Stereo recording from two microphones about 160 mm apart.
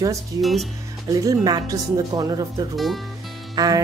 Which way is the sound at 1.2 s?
25° right (ahead or behind).